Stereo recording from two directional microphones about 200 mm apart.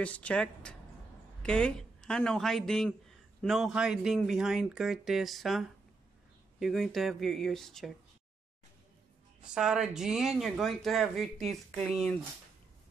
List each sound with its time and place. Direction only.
0.0 s speech: 5° left (ahead or behind)
9.4 s speech: 5° right (ahead or behind)